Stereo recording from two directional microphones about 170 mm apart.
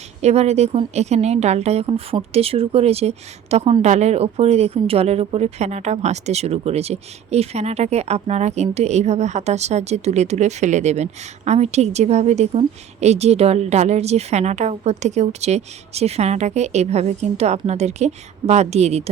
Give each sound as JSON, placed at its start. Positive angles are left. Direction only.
{"t": 0.2, "sound": "speech", "side_deg": -40}